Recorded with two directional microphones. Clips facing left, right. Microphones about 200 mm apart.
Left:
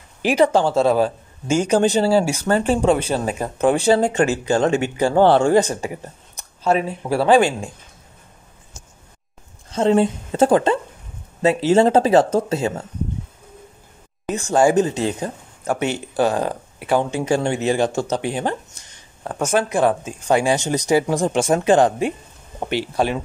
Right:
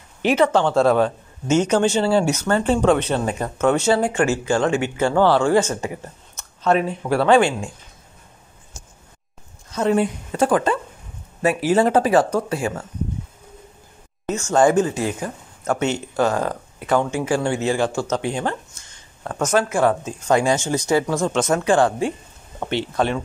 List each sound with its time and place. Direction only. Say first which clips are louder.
0.5 s speech: even; 10° left (ahead or behind)
1.8 s speech: left 2 dB; 35° left (ahead or behind)
2.5 s speech: left 1 dB; 10° left (ahead or behind)
3.9 s speech: left 2 dB; 20° left (ahead or behind)
9.7 s speech: left 3 dB; 25° left (ahead or behind)
14.5 s speech: left 1 dB; 15° left (ahead or behind)
15.6 s speech: even; 15° left (ahead or behind)
18.1 s a sound: left 1 dB; 15° left (ahead or behind)
19.5 s speech: even; 15° left (ahead or behind)